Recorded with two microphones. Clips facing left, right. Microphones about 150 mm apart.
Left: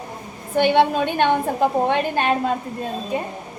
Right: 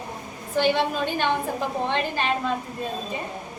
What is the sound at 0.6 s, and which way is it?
A woman's voice, 55° left (ahead or behind).